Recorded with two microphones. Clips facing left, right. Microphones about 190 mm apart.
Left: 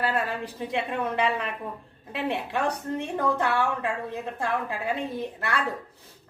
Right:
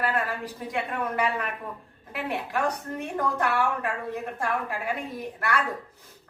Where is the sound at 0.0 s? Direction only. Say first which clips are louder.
Left 1 dB; 25° left (ahead or behind).